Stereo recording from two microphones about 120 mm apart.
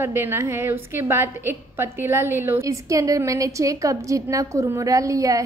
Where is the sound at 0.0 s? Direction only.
20° right (ahead or behind).